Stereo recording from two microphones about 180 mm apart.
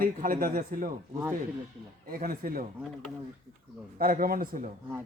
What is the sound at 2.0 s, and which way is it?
Speech, 55° right (ahead or behind).